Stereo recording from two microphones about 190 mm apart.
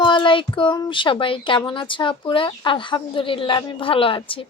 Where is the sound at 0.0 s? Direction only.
25° left (ahead or behind).